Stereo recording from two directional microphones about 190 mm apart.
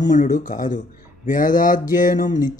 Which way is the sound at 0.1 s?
45° left (ahead or behind).